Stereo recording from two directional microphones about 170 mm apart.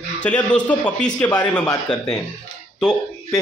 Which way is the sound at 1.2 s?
25° left (ahead or behind).